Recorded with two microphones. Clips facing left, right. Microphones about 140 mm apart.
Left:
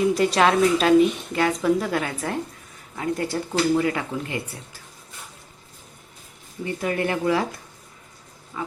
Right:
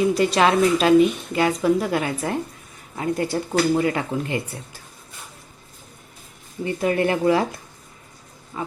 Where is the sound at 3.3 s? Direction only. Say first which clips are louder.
Even; 25° right (ahead or behind).